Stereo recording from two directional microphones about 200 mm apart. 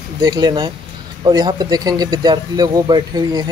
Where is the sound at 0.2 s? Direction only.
20° right (ahead or behind).